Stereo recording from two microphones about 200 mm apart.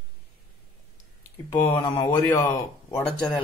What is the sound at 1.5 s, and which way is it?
Speech, 20° left (ahead or behind).